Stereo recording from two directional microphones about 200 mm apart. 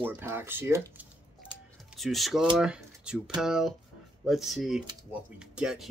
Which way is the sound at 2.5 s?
5° right (ahead or behind).